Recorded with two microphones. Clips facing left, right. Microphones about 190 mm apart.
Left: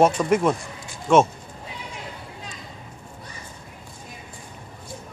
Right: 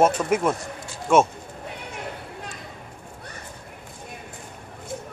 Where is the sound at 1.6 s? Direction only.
60° right (ahead or behind).